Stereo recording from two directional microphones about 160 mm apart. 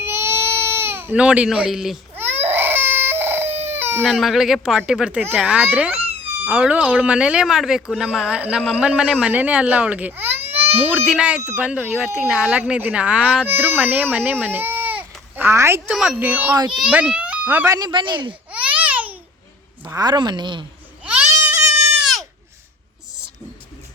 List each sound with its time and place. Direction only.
0.0 s baby cry: 15° right (ahead or behind)
2.1 s baby cry: 15° right (ahead or behind)
4.0 s speech: centre (ahead or behind); by 15.8 s 15° right (ahead or behind)
15.9 s a child's voice: 5° right (ahead or behind)
17.7 s speech: 30° right (ahead or behind)
18.5 s babbling: 10° right (ahead or behind)
19.8 s speech: 20° right (ahead or behind)
21.0 s a sound: 10° right (ahead or behind)
21.7 s goat: 15° right (ahead or behind)
22.0 s goat: centre (ahead or behind)